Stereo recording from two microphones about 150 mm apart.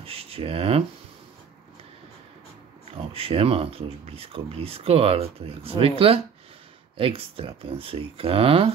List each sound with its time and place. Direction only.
0.0 s speech: 40° right (ahead or behind)
2.9 s speech: 40° right (ahead or behind)